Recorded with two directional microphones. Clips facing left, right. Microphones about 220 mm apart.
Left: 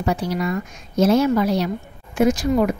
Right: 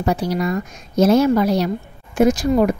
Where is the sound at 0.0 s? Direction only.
40° right (ahead or behind).